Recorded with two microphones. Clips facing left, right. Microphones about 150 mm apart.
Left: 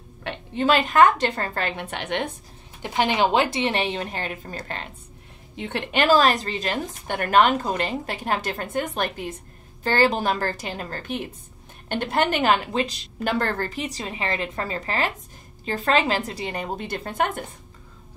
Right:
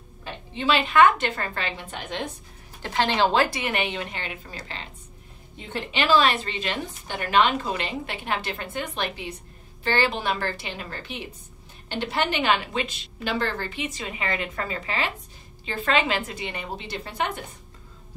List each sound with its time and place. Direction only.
0.3 s a sound: 80° left
0.6 s a woman's voice: 45° left (ahead or behind); by 2.3 s 65° left (ahead or behind)
2.9 s a woman's voice: 15° left (ahead or behind); by 4.8 s 50° left (ahead or behind)
5.6 s a woman's voice: 70° left (ahead or behind); by 17.3 s 50° left (ahead or behind)